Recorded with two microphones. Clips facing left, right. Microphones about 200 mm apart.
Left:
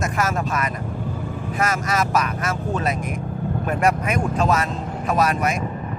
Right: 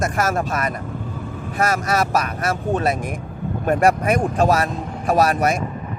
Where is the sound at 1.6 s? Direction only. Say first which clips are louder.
Right 3 dB; 35° right (ahead or behind).